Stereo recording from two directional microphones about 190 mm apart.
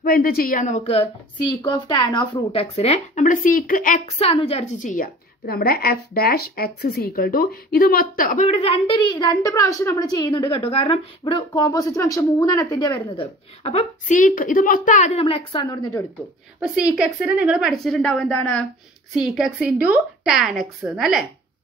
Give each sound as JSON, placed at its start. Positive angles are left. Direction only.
{"t": 0.0, "sound": "a woman's voice", "side_deg": 50}
{"t": 4.2, "sound": "a woman's voice", "side_deg": 30}
{"t": 13.1, "sound": "a woman's voice", "side_deg": 30}
{"t": 16.5, "sound": "a woman's voice", "side_deg": -5}